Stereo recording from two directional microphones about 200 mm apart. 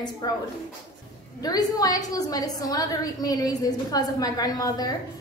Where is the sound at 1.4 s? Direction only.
20° left (ahead or behind).